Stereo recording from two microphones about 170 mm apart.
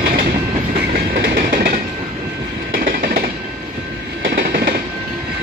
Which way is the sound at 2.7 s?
60° right (ahead or behind).